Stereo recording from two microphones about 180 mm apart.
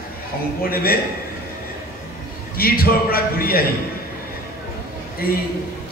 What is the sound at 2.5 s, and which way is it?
A man's voice, 55° left (ahead or behind).